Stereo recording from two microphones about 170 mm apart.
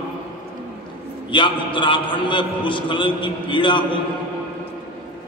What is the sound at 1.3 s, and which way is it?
A man's voice, 30° left (ahead or behind).